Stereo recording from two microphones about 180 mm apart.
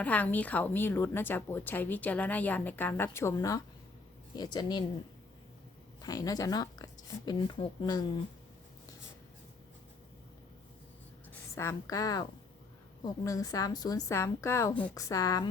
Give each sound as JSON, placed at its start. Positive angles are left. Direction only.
{"t": 0.0, "sound": "a woman's voice", "side_deg": 10}
{"t": 6.0, "sound": "speech", "side_deg": 20}
{"t": 11.3, "sound": "a woman's voice", "side_deg": 15}
{"t": 13.2, "sound": "speech", "side_deg": 20}